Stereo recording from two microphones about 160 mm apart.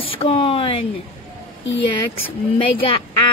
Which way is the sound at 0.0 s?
35° left (ahead or behind).